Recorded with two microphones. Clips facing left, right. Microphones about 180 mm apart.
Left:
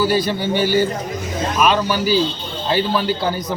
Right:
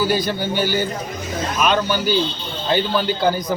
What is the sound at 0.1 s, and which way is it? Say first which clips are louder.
Speech: left 2 dB; centre (ahead or behind).